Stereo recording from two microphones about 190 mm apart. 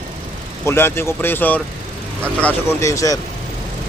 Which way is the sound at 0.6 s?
10° left (ahead or behind).